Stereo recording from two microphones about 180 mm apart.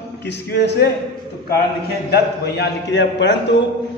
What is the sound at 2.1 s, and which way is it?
A man's voice, 65° left (ahead or behind).